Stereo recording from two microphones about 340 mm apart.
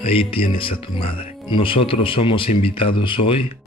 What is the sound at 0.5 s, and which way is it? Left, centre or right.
Speech, centre.